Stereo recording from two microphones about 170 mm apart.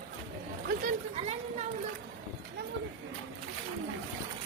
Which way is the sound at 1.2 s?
40° right (ahead or behind).